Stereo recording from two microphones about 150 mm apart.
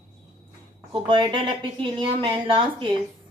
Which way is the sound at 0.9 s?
35° right (ahead or behind).